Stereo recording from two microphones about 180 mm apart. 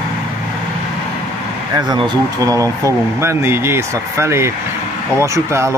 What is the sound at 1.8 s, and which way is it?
Speech, 25° right (ahead or behind).